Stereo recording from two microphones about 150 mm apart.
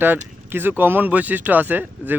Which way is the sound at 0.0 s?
15° right (ahead or behind).